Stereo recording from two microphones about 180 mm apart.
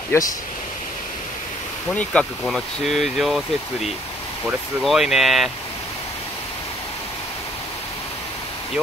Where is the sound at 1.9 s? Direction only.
5° left (ahead or behind).